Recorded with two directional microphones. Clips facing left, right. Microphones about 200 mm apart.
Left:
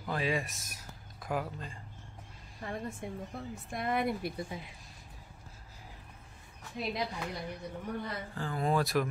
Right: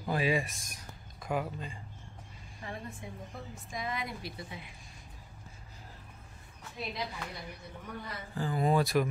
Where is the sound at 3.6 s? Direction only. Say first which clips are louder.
Left 6 dB; 60° left (ahead or behind).